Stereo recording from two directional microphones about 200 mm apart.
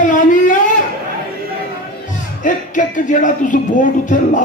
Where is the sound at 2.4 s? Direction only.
40° left (ahead or behind).